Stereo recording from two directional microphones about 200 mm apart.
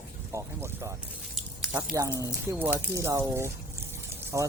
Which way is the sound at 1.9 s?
15° right (ahead or behind).